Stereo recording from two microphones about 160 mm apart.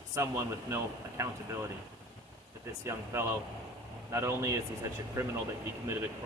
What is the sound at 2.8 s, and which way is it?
Speech, 15° right (ahead or behind).